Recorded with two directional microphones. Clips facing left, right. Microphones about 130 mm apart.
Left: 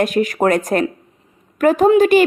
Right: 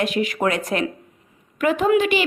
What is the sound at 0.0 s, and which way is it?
A woman's voice, 45° left (ahead or behind).